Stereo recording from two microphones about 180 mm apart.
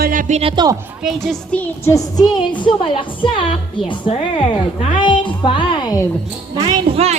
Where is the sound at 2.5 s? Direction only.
25° left (ahead or behind).